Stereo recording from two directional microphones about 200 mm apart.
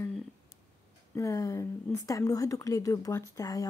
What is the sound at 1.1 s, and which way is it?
Speech, 15° left (ahead or behind).